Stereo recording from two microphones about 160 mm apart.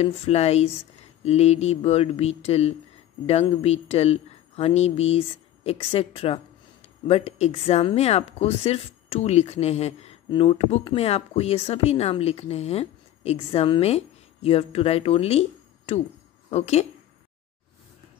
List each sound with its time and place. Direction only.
0.0 s speech: 40° left (ahead or behind)